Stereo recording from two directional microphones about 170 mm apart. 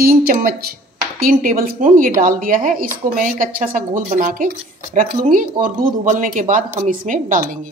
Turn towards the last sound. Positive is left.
turn(degrees=-50)  # may be behind; listen again after turning